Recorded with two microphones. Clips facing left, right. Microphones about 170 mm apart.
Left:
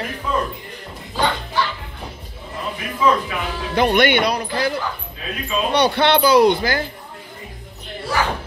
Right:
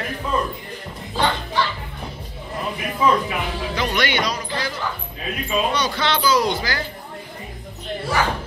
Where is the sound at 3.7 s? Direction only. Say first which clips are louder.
Left 8 dB; 55° left (ahead or behind).